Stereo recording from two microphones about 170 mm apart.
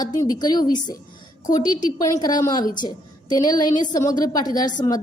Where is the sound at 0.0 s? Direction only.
20° left (ahead or behind).